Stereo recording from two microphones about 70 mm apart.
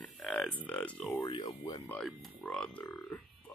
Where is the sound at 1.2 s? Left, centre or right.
Left.